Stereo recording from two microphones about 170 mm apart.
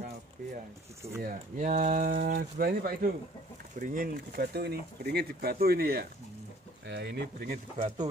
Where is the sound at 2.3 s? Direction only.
60° right (ahead or behind).